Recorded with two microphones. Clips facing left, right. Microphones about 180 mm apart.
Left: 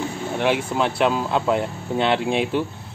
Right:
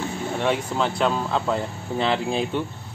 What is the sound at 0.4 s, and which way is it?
Speech, 5° left (ahead or behind).